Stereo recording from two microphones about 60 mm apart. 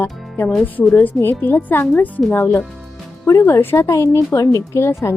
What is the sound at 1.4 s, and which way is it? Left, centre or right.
Speech, left.